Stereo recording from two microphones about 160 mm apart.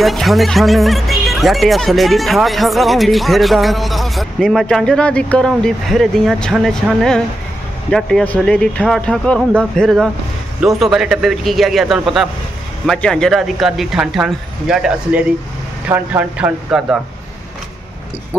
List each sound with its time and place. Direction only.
0.0 s speech: centre (ahead or behind)